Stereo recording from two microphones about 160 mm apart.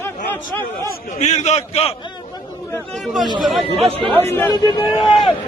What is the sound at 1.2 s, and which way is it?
Speech, 45° left (ahead or behind).